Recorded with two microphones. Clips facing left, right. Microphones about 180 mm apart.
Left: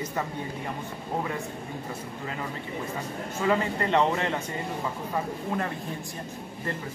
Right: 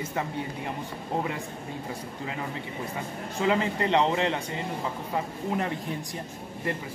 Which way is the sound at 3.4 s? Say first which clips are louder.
Right 1 dB; 20° right (ahead or behind).